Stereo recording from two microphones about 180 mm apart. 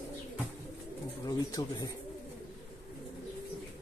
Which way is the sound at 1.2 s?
20° left (ahead or behind).